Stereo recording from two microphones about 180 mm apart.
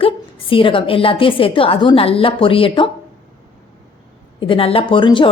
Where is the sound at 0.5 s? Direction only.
30° left (ahead or behind).